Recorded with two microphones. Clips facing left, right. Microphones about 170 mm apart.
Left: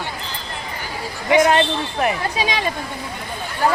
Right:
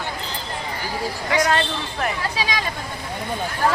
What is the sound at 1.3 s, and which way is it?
Speech, 20° left (ahead or behind).